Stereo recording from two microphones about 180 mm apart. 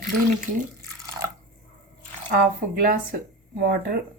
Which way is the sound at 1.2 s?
15° right (ahead or behind).